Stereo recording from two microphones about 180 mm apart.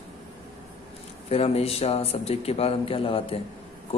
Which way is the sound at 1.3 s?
35° left (ahead or behind).